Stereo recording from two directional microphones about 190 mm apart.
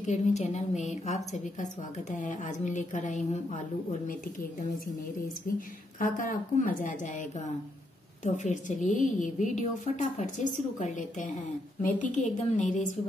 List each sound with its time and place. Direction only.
0.0 s a woman's voice: 40° left (ahead or behind)